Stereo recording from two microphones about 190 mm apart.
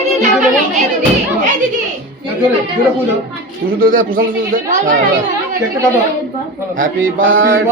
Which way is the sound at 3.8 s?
45° right (ahead or behind).